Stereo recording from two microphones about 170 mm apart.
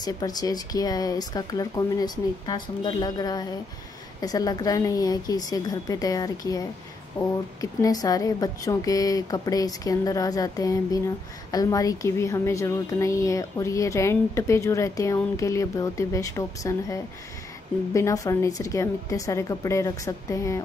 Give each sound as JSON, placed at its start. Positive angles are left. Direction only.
{"t": 0.0, "sound": "a woman's voice", "side_deg": 25}